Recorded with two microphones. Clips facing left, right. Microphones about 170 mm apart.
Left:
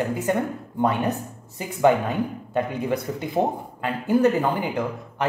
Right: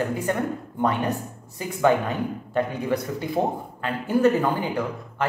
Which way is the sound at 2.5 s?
15° left (ahead or behind).